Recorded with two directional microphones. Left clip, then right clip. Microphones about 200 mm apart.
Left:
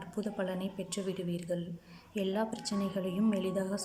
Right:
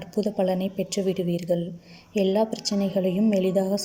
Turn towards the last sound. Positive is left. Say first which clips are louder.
# right 11 dB
turn(degrees=-20)  # may be behind; listen again after turning